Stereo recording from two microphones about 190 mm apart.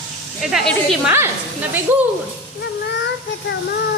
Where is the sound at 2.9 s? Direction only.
65° left (ahead or behind).